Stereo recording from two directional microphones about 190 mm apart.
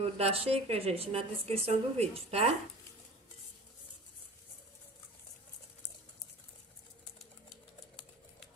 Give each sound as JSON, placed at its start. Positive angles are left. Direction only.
{"t": 0.0, "sound": "a woman's voice", "side_deg": -30}